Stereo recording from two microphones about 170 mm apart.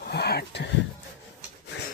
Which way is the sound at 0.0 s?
70° left (ahead or behind).